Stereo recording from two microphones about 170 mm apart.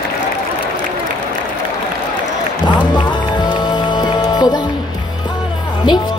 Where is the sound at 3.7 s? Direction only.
25° left (ahead or behind).